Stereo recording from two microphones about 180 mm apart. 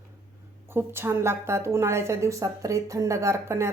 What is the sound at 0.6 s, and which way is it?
A woman's voice, 15° right (ahead or behind).